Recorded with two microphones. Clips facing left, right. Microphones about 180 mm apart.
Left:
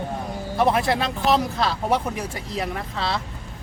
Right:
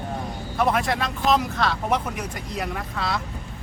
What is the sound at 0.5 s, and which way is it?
Speech, 30° left (ahead or behind).